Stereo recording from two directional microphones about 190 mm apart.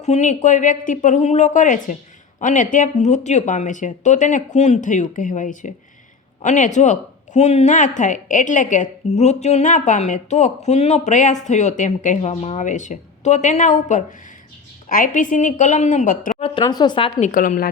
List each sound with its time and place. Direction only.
0.0 s a woman's voice: 40° left (ahead or behind)
16.4 s speech: 25° left (ahead or behind)
17.2 s speech: 40° left (ahead or behind)